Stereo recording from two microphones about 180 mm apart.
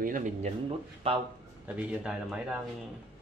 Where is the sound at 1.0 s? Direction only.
30° right (ahead or behind).